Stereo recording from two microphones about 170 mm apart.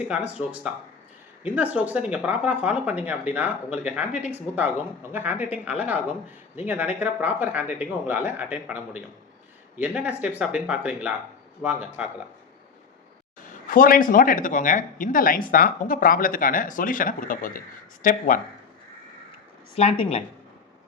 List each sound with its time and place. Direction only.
0.1 s speech: 10° right (ahead or behind)
13.7 s speech: 55° left (ahead or behind)
19.7 s speech: 35° left (ahead or behind)